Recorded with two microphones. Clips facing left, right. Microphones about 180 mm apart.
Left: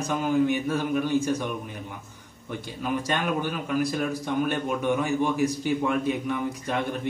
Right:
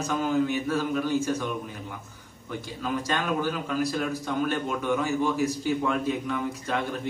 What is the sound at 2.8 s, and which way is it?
A man's voice, 15° left (ahead or behind).